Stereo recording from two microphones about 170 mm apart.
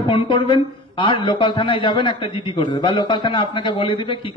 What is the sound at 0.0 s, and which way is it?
A man's voice, 30° left (ahead or behind).